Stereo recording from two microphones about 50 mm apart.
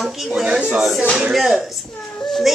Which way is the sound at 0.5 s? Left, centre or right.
Right.